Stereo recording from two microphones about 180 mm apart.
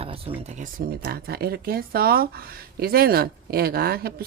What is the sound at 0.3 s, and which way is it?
Speech, 40° right (ahead or behind).